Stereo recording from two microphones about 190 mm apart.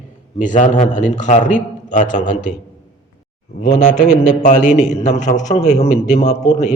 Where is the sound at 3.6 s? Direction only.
40° left (ahead or behind).